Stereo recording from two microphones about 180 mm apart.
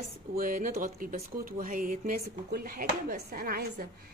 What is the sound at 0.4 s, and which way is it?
Speech, 50° right (ahead or behind).